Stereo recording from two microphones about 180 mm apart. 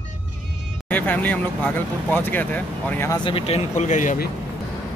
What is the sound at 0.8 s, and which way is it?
Speech, 10° left (ahead or behind).